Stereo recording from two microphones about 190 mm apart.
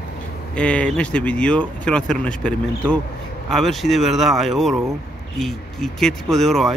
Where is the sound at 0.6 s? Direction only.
5° left (ahead or behind).